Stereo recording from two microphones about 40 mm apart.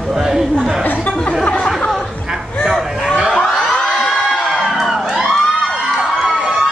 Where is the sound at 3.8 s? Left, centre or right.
Centre.